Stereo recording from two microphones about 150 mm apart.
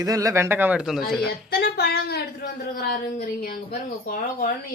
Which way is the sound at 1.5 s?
90° left.